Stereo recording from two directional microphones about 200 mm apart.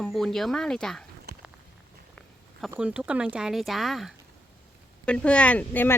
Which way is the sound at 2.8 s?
5° right (ahead or behind).